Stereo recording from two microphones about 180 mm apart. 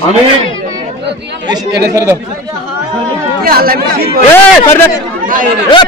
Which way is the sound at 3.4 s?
55° right (ahead or behind).